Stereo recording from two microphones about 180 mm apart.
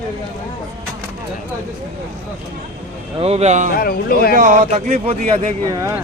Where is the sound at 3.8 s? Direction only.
55° left (ahead or behind).